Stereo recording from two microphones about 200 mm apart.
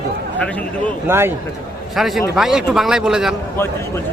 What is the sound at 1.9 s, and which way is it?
A man's voice, centre (ahead or behind).